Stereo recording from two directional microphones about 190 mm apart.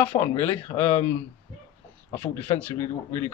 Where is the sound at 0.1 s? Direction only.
15° left (ahead or behind).